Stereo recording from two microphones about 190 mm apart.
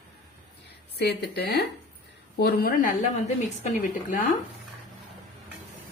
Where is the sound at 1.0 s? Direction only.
60° left (ahead or behind).